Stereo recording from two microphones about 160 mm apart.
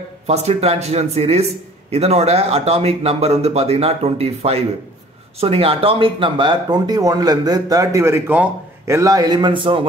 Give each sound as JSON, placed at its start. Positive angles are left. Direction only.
{"t": 0.3, "sound": "speech", "side_deg": -40}